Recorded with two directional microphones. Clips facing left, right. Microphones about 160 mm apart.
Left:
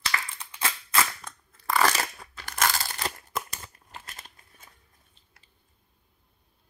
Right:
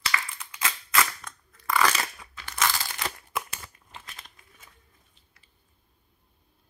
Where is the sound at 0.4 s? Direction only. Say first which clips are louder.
Even; 30° left (ahead or behind).